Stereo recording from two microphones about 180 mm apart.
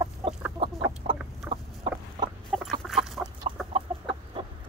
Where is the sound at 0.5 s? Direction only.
30° right (ahead or behind).